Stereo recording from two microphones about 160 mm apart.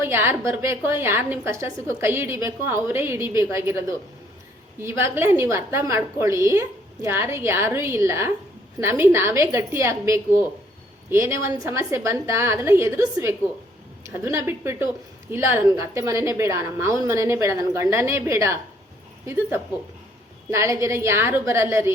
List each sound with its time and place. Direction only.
0.0 s a woman's voice: 15° right (ahead or behind)